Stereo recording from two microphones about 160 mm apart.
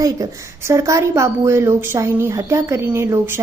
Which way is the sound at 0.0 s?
20° right (ahead or behind).